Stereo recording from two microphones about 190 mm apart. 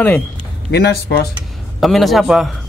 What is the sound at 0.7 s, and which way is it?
Speech, 60° left (ahead or behind).